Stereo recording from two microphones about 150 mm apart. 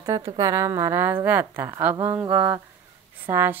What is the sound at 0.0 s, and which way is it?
A woman's voice, 20° right (ahead or behind).